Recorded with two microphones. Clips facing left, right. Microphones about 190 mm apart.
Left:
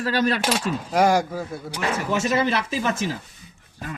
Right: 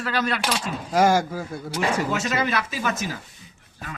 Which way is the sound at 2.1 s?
25° left (ahead or behind).